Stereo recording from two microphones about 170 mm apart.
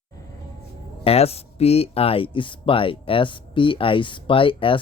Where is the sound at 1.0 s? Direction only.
35° left (ahead or behind).